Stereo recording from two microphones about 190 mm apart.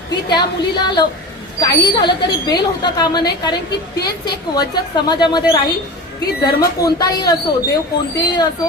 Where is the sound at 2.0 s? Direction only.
20° left (ahead or behind).